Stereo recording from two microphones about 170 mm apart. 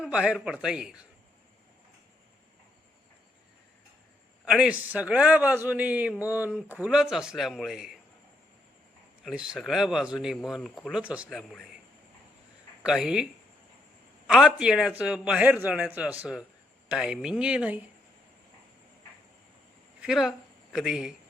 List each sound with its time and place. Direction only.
0.0 s a man's voice: 5° right (ahead or behind)
4.4 s a man's voice: 5° right (ahead or behind)
9.2 s a man's voice: 5° right (ahead or behind)
12.8 s speech: 5° right (ahead or behind)
14.3 s a man's voice: 5° right (ahead or behind)
20.0 s a man's voice: 5° right (ahead or behind)